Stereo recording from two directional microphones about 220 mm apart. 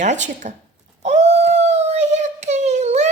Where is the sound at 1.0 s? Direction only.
30° right (ahead or behind).